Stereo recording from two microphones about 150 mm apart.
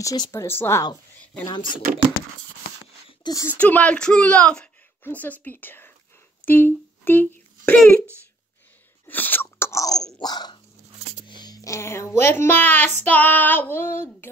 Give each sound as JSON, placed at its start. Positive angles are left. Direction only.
{"t": 0.0, "sound": "speech", "side_deg": 25}
{"t": 3.1, "sound": "a sound", "side_deg": 25}
{"t": 3.5, "sound": "a woman's voice", "side_deg": 10}
{"t": 9.0, "sound": "chewing", "side_deg": 10}
{"t": 10.1, "sound": "dog", "side_deg": 25}
{"t": 11.2, "sound": "speech", "side_deg": 30}
{"t": 13.0, "sound": "child singing", "side_deg": 10}